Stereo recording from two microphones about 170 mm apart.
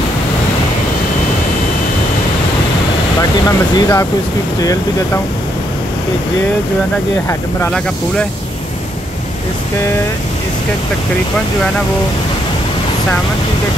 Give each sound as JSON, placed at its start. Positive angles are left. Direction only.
{"t": 3.2, "sound": "speech", "side_deg": 20}
{"t": 7.2, "sound": "speech", "side_deg": 10}